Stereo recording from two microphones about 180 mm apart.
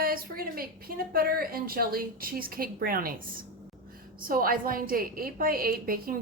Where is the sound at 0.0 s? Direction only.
55° right (ahead or behind).